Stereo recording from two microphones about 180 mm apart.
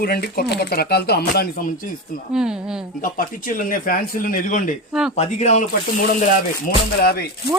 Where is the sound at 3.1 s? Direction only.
50° left (ahead or behind).